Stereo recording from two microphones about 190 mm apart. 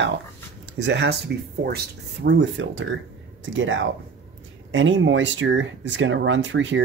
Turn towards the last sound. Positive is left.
turn(degrees=-75)  # may be behind; listen again after turning